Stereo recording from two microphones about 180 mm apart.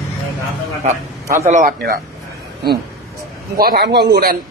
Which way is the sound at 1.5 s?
50° right (ahead or behind).